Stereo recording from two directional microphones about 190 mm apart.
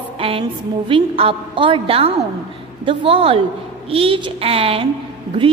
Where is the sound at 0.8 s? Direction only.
30° right (ahead or behind).